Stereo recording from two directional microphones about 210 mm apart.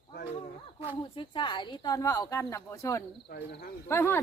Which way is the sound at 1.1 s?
25° left (ahead or behind).